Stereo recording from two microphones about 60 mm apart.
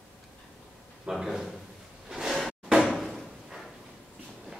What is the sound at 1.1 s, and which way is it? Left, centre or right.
Speech, centre.